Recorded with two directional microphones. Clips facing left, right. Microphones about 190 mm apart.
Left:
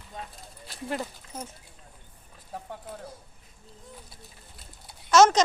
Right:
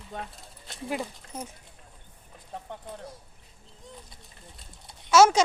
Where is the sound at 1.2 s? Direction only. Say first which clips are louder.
Right 1 dB; 60° right (ahead or behind).